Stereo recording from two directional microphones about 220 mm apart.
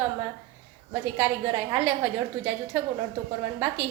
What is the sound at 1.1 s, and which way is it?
Speech, 15° right (ahead or behind).